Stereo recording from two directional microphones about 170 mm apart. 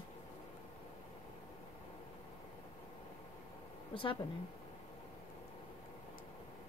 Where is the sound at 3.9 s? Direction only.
30° left (ahead or behind).